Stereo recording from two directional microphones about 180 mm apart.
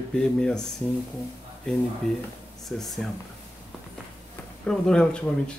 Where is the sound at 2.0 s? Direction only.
5° left (ahead or behind).